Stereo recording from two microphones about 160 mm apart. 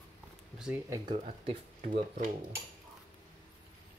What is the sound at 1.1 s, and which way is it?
Speech, 45° right (ahead or behind).